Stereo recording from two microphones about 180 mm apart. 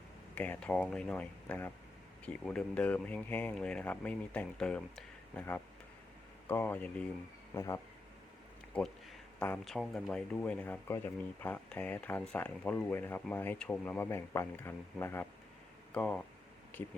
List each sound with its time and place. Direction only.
0.3 s speech: 10° left (ahead or behind)